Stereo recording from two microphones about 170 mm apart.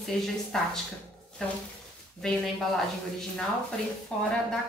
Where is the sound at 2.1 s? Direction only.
Centre (ahead or behind).